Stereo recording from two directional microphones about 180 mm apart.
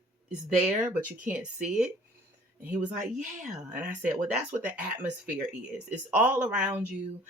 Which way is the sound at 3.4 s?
5° right (ahead or behind).